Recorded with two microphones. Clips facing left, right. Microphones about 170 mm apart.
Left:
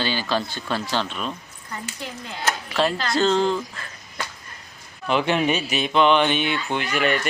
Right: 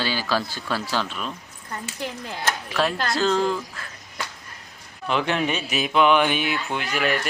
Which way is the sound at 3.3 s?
25° left (ahead or behind).